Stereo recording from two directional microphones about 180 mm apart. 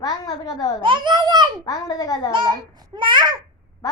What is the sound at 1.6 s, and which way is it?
Speech, 20° left (ahead or behind).